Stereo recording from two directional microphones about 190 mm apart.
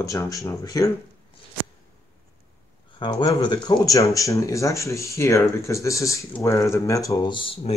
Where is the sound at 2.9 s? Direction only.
20° left (ahead or behind).